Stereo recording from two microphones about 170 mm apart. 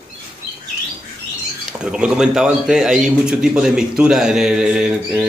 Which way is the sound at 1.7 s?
5° right (ahead or behind).